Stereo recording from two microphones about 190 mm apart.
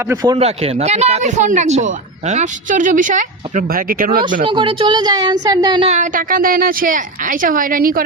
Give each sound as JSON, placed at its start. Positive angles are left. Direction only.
{"t": 0.1, "sound": "speech", "side_deg": -15}
{"t": 0.3, "sound": "speech", "side_deg": -30}
{"t": 4.4, "sound": "a woman's voice", "side_deg": -25}
{"t": 5.9, "sound": "a woman's voice", "side_deg": -45}